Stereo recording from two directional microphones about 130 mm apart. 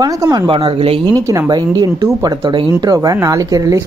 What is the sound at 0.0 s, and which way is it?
Speech, 30° right (ahead or behind).